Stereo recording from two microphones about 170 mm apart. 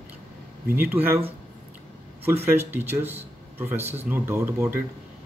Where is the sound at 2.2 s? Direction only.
15° right (ahead or behind).